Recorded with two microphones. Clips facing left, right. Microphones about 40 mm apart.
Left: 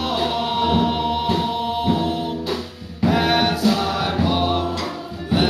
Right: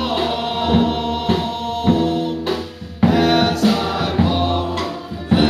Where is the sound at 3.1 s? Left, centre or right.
Centre.